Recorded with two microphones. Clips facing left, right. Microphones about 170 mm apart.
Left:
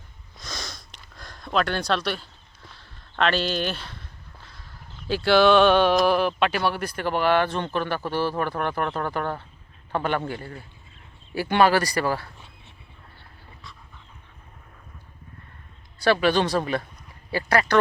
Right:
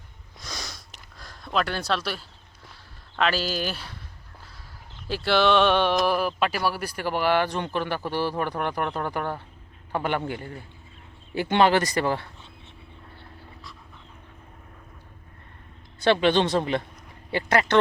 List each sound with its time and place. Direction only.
0.4 s sniff: 10° right (ahead or behind)
2.7 s a sound: 5° right (ahead or behind)
5.0 s speech: centre (ahead or behind); by 12.3 s 20° right (ahead or behind)
16.0 s speech: 20° right (ahead or behind)